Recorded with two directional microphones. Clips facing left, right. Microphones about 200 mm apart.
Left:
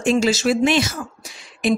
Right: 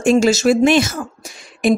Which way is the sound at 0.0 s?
45° right (ahead or behind).